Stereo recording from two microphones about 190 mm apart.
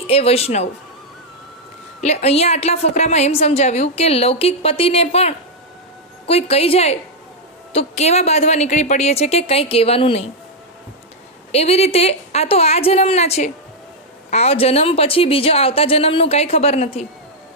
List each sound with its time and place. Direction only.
0.1 s a woman's voice: 30° left (ahead or behind)
2.0 s a woman's voice: 35° left (ahead or behind)
11.5 s a woman's voice: 35° left (ahead or behind)